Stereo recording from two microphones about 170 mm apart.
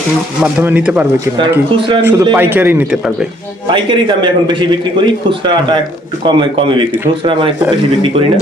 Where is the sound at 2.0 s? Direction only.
20° right (ahead or behind).